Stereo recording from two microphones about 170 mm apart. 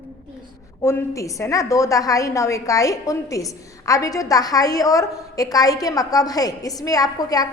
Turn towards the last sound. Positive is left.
turn(degrees=20)  # may be behind; listen again after turning